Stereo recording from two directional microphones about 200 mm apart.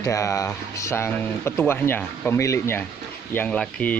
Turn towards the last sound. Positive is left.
turn(degrees=5)  # may be behind; listen again after turning